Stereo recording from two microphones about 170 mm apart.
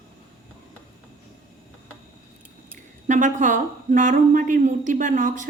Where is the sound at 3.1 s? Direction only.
45° right (ahead or behind).